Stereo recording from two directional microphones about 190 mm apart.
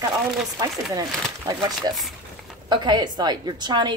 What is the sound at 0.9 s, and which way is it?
A woman's voice, 20° right (ahead or behind).